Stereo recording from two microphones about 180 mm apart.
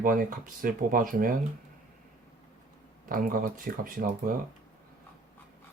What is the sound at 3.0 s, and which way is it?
Speech, 50° right (ahead or behind).